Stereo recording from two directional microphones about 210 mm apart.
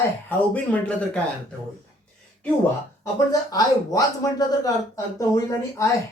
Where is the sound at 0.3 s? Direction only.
5° left (ahead or behind).